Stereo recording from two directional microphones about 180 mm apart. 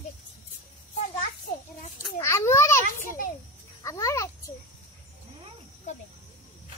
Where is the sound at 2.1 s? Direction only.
15° left (ahead or behind).